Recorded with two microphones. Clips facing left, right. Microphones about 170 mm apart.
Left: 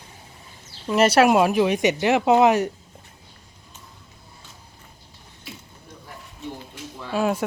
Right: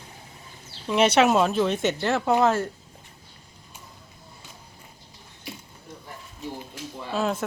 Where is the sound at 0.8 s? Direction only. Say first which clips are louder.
Left 3 dB; 5° left (ahead or behind).